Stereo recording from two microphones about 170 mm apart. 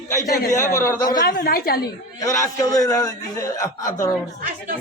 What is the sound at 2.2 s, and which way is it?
A man's voice, 20° left (ahead or behind).